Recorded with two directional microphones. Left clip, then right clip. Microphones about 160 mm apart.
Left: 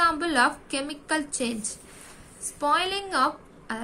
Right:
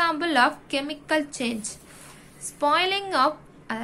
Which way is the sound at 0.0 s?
15° right (ahead or behind).